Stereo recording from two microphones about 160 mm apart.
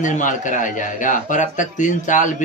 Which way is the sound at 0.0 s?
50° left (ahead or behind).